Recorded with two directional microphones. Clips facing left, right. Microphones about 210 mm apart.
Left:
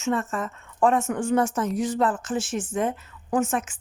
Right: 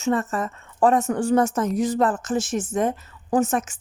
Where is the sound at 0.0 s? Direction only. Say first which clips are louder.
Right 3 dB; 40° right (ahead or behind).